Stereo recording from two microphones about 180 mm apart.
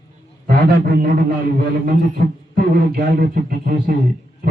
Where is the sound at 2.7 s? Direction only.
60° right (ahead or behind).